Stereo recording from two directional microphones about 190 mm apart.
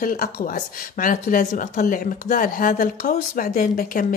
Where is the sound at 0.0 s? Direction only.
45° left (ahead or behind).